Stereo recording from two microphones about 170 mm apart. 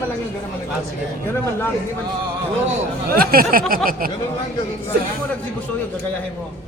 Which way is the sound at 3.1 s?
60° right (ahead or behind).